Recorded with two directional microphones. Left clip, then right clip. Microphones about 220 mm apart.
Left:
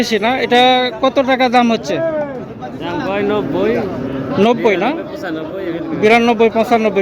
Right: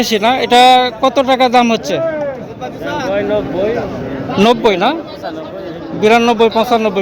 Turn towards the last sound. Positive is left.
turn(degrees=5)  # may be behind; listen again after turning